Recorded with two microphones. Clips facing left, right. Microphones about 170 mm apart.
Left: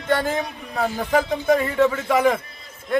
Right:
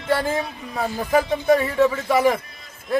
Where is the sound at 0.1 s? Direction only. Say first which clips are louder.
Even; 10° right (ahead or behind).